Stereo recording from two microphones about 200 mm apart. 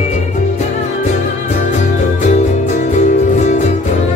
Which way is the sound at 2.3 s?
35° left (ahead or behind).